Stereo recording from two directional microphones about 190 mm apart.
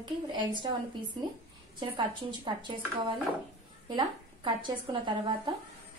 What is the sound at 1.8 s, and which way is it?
Speech, 25° right (ahead or behind).